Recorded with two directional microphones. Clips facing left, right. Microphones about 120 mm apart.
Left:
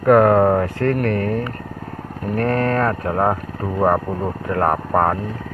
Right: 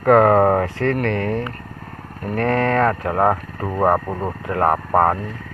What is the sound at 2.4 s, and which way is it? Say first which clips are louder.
Speech: right 2 dB; 35° right (ahead or behind).